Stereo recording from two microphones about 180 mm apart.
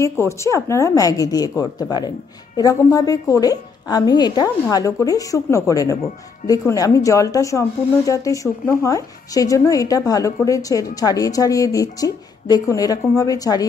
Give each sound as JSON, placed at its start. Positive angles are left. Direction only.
{"t": 0.0, "sound": "a woman's voice", "side_deg": 15}